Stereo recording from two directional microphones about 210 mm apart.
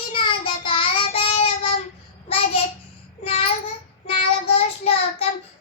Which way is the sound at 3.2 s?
25° left (ahead or behind).